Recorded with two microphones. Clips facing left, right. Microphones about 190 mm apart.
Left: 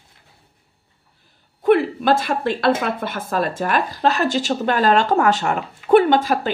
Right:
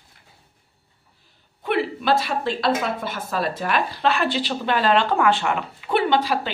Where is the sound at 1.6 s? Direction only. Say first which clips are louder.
Left 6 dB; 45° left (ahead or behind).